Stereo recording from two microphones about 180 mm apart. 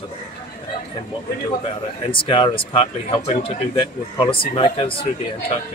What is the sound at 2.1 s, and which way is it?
A man's voice, 25° left (ahead or behind).